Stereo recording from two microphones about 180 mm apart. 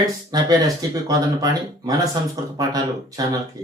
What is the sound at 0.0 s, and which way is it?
Speech, 20° right (ahead or behind).